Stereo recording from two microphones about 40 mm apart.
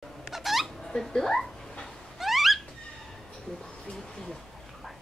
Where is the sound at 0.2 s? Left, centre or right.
Centre.